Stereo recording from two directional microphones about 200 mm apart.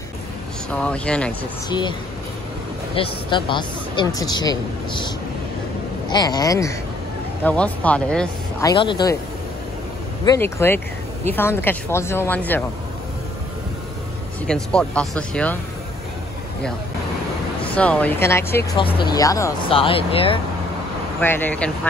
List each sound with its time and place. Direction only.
0.7 s speech: 5° left (ahead or behind)
1.7 s speech: 20° left (ahead or behind)
3.0 s speech: 25° left (ahead or behind)
7.4 s speech: 5° left (ahead or behind)
8.5 s speech: 20° left (ahead or behind)
10.2 s speech: 15° left (ahead or behind)
14.4 s speech: 5° left (ahead or behind)
17.7 s speech: 5° left (ahead or behind)
18.8 s speech: 25° left (ahead or behind)
19.7 s speech: 25° left (ahead or behind)
21.2 s speech: 10° left (ahead or behind)